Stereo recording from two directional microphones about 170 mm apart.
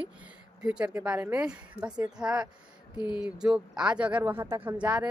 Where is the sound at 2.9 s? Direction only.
25° left (ahead or behind).